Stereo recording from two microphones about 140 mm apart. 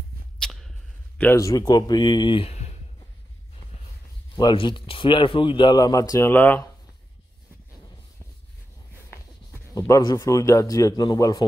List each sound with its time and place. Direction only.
0.4 s rodents: centre (ahead or behind)
1.1 s a sound: 10° left (ahead or behind)
1.4 s speech: 25° left (ahead or behind); by 2.7 s 45° left (ahead or behind)
4.4 s speech: 35° left (ahead or behind); by 6.7 s 15° left (ahead or behind)
9.8 s speech: 25° left (ahead or behind)